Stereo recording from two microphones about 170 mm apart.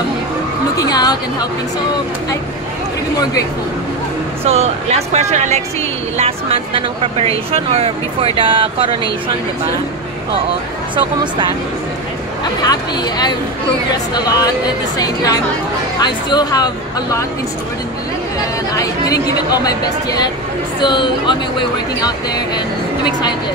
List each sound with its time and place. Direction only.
0.7 s speech: 25° left (ahead or behind)
4.5 s speech: 40° right (ahead or behind)
12.6 s speech: 25° left (ahead or behind)
16.0 s speech: 25° left (ahead or behind)
18.7 s speech: 20° left (ahead or behind)